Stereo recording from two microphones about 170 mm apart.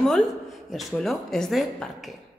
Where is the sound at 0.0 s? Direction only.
Centre (ahead or behind).